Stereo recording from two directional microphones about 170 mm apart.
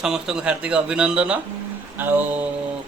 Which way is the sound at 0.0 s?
5° right (ahead or behind).